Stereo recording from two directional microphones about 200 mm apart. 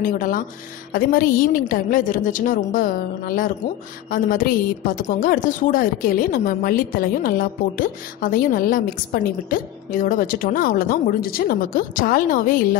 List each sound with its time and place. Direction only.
0.0 s a woman's voice: 45° left (ahead or behind)